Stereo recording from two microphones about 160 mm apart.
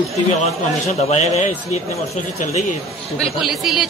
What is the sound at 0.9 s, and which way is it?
A man's voice, 45° left (ahead or behind).